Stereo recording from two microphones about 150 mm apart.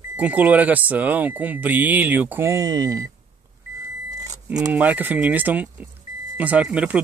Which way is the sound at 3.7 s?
20° right (ahead or behind).